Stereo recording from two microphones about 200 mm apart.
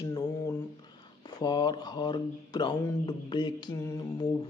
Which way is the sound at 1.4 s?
20° left (ahead or behind).